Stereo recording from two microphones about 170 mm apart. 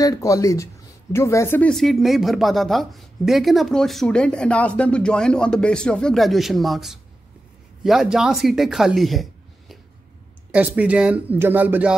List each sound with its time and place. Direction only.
0.0 s speech: 20° left (ahead or behind)
1.7 s speech: centre (ahead or behind)